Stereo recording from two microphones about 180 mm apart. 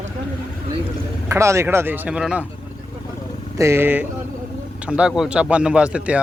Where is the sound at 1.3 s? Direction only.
15° right (ahead or behind).